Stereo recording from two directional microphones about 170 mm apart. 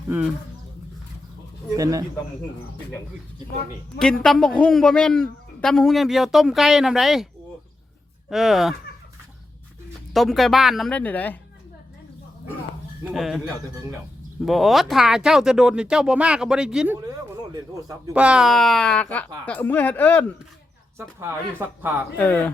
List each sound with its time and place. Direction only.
1.7 s speech: 20° right (ahead or behind)
3.9 s a man's voice: 5° left (ahead or behind)
8.3 s a man's voice: centre (ahead or behind)
10.1 s a man's voice: centre (ahead or behind)
13.1 s a man's voice: centre (ahead or behind)
14.4 s a man's voice: centre (ahead or behind)
17.1 s a sound: 20° right (ahead or behind)
18.1 s a man's voice: 5° right (ahead or behind); by 20.2 s 10° left (ahead or behind)
21.6 s speech: 15° right (ahead or behind)
22.2 s speech: 10° left (ahead or behind)